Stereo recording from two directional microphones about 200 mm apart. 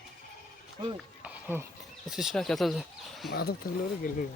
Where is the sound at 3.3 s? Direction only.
50° left (ahead or behind).